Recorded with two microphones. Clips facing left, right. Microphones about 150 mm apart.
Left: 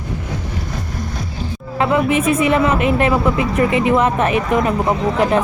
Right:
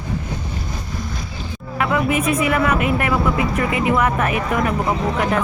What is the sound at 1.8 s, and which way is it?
Speech, 25° left (ahead or behind).